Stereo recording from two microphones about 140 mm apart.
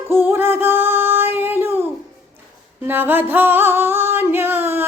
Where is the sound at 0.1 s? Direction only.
15° right (ahead or behind).